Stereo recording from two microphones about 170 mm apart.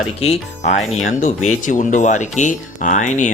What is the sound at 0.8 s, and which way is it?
Speech, centre (ahead or behind).